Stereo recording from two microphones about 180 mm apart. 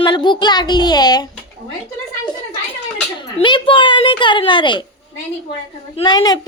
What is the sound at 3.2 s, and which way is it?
Speech, 25° left (ahead or behind).